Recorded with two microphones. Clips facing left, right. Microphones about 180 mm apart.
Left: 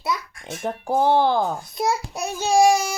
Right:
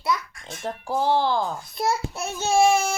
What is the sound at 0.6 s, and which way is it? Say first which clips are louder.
Speech: left 4 dB; 55° left (ahead or behind).